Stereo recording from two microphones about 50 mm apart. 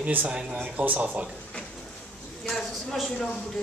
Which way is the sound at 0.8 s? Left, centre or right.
Right.